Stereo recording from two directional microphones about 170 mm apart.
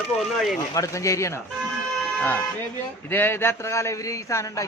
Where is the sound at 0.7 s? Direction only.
20° left (ahead or behind).